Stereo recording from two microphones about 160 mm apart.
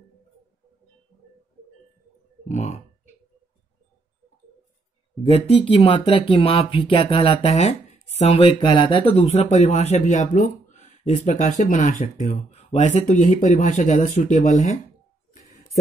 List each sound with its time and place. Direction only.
2.4 s speech: 45° left (ahead or behind)
5.3 s speech: 40° left (ahead or behind)